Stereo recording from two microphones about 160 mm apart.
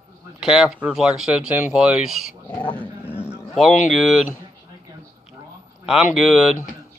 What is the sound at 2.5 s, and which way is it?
Dog, 10° left (ahead or behind).